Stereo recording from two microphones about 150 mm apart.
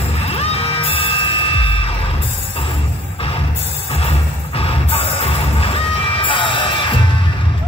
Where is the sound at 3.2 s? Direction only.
40° left (ahead or behind).